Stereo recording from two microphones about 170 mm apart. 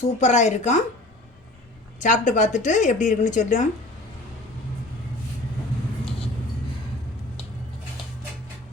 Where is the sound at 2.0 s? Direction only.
45° left (ahead or behind).